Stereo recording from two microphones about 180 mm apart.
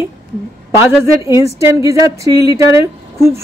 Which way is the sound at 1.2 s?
15° right (ahead or behind).